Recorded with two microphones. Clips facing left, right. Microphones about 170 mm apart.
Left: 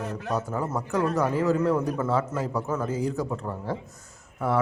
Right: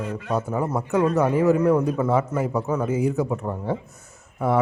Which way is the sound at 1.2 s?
15° right (ahead or behind).